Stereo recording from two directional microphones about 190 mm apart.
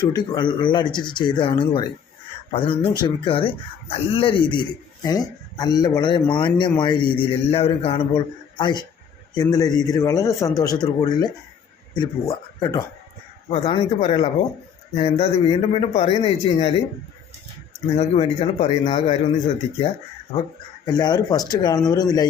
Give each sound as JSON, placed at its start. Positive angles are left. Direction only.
{"t": 0.1, "sound": "a man's voice", "side_deg": 25}
{"t": 17.9, "sound": "a man's voice", "side_deg": 35}
{"t": 20.8, "sound": "speech", "side_deg": 20}